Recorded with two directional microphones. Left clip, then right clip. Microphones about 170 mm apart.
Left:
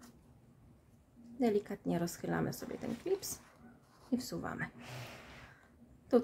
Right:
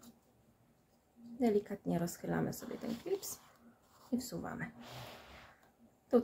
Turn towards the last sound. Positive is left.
turn(degrees=15)  # may be behind; listen again after turning